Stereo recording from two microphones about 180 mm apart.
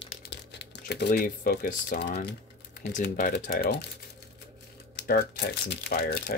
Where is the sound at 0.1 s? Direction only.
65° left (ahead or behind).